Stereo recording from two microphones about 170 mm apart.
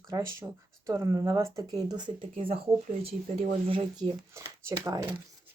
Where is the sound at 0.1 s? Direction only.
15° right (ahead or behind); by 4.0 s 35° right (ahead or behind).